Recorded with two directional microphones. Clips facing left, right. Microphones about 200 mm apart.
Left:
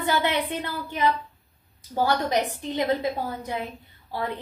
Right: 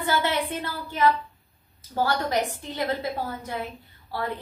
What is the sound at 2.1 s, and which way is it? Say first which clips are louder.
A woman's voice: left 2 dB; 15° left (ahead or behind).